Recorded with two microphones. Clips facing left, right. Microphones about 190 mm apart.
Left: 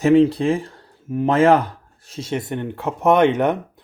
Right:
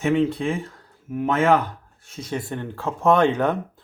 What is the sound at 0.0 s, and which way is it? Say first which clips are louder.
Speech: left 7 dB; 35° left (ahead or behind).